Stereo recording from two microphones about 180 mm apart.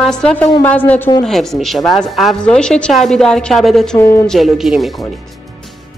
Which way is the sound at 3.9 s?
15° left (ahead or behind).